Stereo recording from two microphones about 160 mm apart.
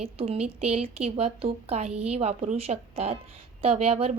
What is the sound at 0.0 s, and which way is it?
A woman's voice, 40° right (ahead or behind).